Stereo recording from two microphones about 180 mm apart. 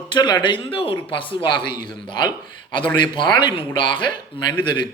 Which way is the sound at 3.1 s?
25° left (ahead or behind).